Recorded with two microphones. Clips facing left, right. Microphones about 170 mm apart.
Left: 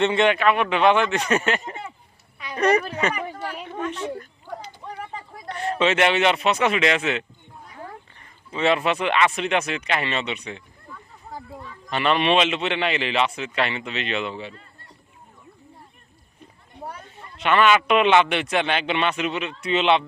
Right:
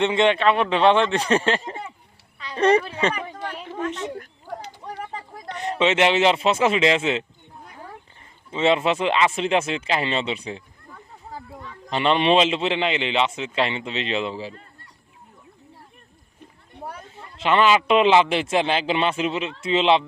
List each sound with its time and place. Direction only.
0.0 s a man's voice: 15° right (ahead or behind)
0.3 s a man's voice: 30° right (ahead or behind)
3.2 s a sound: 5° left (ahead or behind)
5.5 s a man's voice: 20° right (ahead or behind)
8.4 s a man's voice: 25° right (ahead or behind)
17.2 s a man's voice: 25° right (ahead or behind)